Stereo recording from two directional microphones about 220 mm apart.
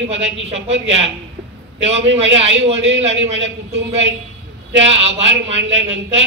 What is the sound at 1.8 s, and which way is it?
Speech, 55° right (ahead or behind).